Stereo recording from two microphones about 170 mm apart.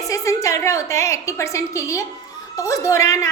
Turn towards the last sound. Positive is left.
turn(degrees=15)  # may be behind; listen again after turning